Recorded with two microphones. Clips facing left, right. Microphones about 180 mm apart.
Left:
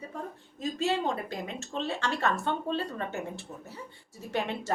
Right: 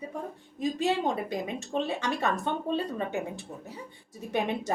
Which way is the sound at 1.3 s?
15° right (ahead or behind).